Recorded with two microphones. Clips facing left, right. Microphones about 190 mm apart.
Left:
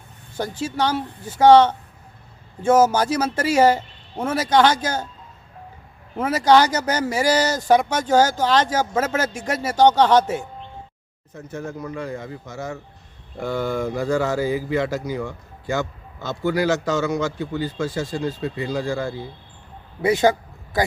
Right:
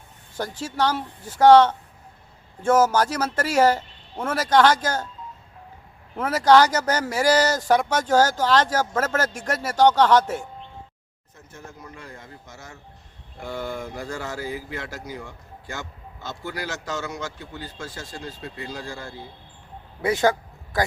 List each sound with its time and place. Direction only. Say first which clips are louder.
0.6 s speech: left 1 dB; 20° left (ahead or behind)
6.1 s speech: left 1 dB; 20° left (ahead or behind)
11.3 s a man's voice: left 12 dB; 90° left
20.0 s speech: left 3 dB; 20° left (ahead or behind)